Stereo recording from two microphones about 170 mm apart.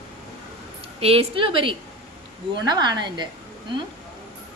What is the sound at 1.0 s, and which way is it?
A woman's voice, 35° right (ahead or behind).